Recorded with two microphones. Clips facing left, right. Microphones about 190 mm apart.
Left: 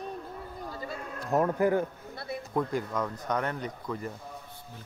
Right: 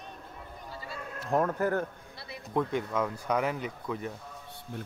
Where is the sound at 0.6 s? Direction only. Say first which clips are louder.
Left 5 dB; 45° left (ahead or behind).